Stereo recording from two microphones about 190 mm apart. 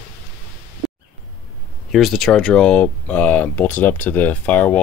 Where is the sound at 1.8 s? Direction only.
Centre (ahead or behind).